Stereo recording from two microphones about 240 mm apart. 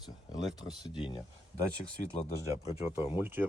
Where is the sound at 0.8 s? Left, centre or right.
Centre.